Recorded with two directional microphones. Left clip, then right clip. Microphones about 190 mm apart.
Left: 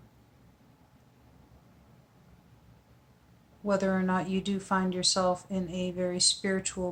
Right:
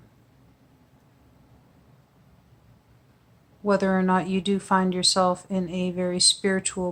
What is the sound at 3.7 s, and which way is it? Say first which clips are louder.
Speech: right 6 dB; 40° right (ahead or behind).